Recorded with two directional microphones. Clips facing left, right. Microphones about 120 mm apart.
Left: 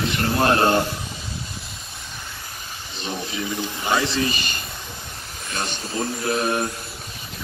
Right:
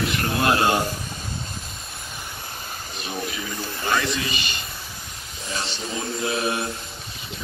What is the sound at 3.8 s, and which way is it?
Speech, 20° left (ahead or behind).